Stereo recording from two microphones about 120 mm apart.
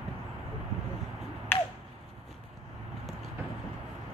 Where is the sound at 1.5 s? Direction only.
15° left (ahead or behind).